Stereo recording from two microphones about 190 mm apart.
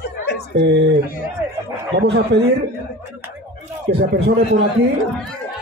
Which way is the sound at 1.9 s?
65° right (ahead or behind).